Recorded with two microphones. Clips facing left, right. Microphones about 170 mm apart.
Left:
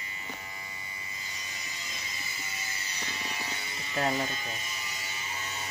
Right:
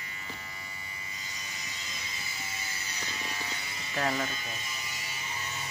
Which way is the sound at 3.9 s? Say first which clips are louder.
Left 1 dB; 25° left (ahead or behind).